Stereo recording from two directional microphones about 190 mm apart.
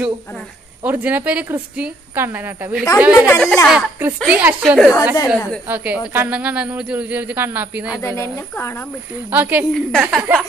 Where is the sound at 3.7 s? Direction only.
5° right (ahead or behind).